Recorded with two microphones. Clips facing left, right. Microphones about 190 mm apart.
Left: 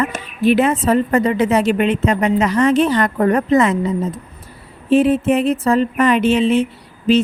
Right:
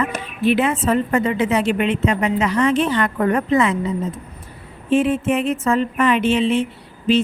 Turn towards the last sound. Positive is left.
turn(degrees=40)  # may be behind; listen again after turning